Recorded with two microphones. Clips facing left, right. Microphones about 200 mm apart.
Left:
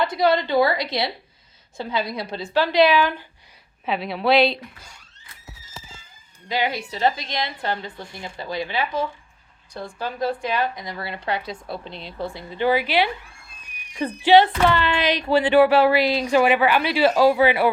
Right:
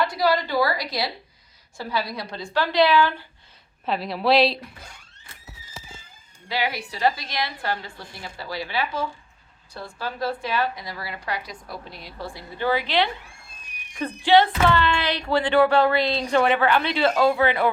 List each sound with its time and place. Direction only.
0.0 s a woman's voice: 20° left (ahead or behind)
3.8 s a woman's voice: centre (ahead or behind)
6.5 s a woman's voice: 20° left (ahead or behind)